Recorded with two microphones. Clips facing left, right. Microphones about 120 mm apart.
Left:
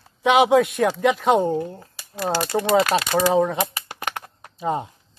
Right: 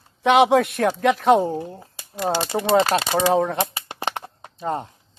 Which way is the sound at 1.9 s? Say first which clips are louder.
Right 1 dB; 20° right (ahead or behind).